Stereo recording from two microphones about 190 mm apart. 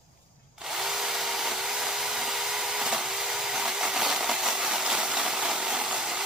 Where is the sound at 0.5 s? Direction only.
Centre (ahead or behind).